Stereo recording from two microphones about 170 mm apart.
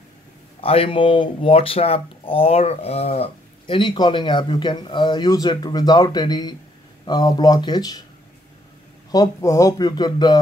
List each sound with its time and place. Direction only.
0.6 s speech: 35° left (ahead or behind)
9.1 s speech: 20° left (ahead or behind)